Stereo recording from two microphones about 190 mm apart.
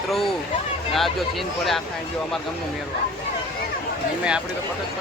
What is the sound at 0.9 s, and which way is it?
Speech, centre (ahead or behind).